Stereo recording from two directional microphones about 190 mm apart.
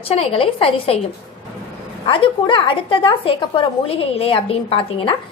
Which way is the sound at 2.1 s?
25° left (ahead or behind).